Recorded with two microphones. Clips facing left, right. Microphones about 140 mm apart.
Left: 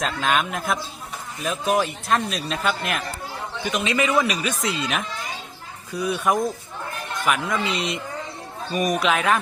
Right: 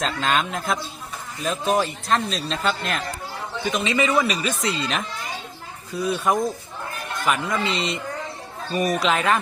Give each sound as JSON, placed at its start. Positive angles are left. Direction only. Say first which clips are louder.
{"t": 0.0, "sound": "speech", "louder": "even", "side_deg": 5}